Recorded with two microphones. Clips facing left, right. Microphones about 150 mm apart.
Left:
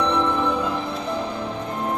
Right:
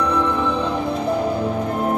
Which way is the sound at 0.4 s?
10° left (ahead or behind).